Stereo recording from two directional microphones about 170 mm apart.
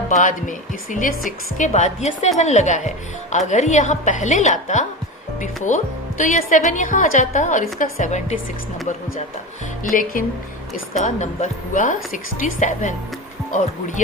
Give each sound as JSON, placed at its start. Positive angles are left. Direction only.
{"t": 0.1, "sound": "a woman's voice", "side_deg": 50}
{"t": 9.9, "sound": "a woman's voice", "side_deg": 55}